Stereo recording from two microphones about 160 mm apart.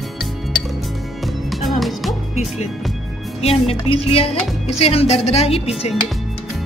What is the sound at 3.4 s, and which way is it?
A woman's voice, 40° left (ahead or behind).